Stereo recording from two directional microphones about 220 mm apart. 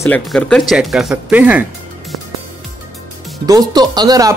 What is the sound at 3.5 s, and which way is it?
Speech, 20° right (ahead or behind).